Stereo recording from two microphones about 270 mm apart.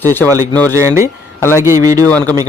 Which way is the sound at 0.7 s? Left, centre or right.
Centre.